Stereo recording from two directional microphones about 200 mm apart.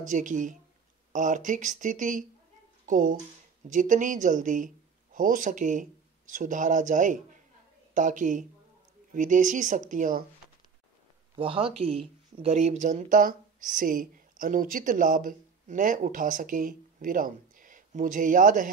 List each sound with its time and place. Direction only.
0.0 s speech: 40° right (ahead or behind)
11.3 s speech: 25° right (ahead or behind)